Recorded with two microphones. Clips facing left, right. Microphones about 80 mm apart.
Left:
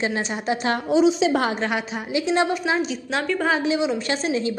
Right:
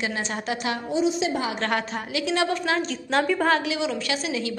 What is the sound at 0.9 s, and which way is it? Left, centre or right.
Speech, left.